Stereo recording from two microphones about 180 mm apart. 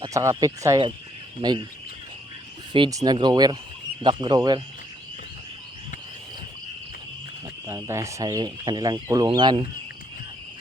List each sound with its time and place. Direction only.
0.0 s speech: 15° right (ahead or behind)
2.7 s speech: 25° right (ahead or behind)
7.7 s speech: 15° right (ahead or behind)